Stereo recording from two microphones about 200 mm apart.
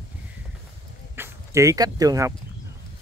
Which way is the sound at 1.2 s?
15° right (ahead or behind).